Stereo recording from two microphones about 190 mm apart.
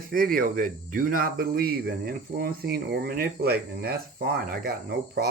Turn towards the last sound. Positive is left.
turn(degrees=-55)  # may be behind; listen again after turning